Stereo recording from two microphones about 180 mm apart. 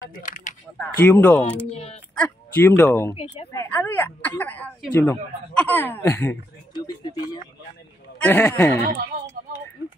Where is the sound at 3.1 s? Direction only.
30° left (ahead or behind).